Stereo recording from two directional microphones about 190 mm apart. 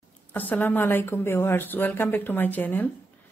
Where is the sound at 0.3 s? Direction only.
10° left (ahead or behind).